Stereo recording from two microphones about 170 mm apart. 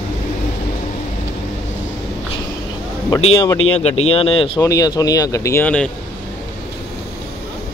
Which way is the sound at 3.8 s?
35° left (ahead or behind).